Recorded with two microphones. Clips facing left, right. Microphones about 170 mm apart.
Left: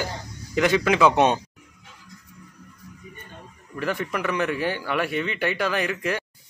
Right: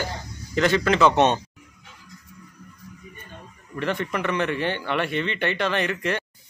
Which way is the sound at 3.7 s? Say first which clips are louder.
Right 1 dB; 5° left (ahead or behind).